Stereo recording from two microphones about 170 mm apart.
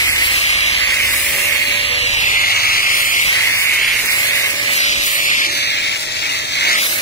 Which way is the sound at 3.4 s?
15° left (ahead or behind).